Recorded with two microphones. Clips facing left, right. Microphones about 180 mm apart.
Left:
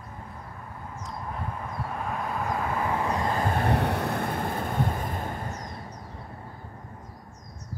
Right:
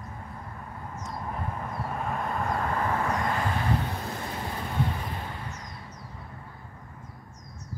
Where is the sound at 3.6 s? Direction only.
70° left (ahead or behind); by 5.7 s 45° left (ahead or behind).